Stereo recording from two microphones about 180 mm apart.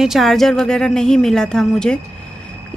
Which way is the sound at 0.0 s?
Centre (ahead or behind).